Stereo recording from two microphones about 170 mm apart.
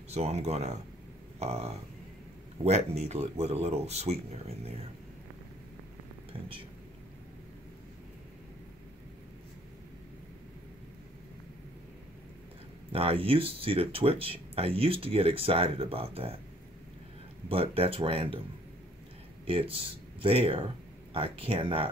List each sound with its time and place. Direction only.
0.1 s speech: 40° right (ahead or behind)
12.9 s speech: 35° right (ahead or behind)
17.5 s speech: 35° right (ahead or behind)
19.4 s speech: 35° right (ahead or behind)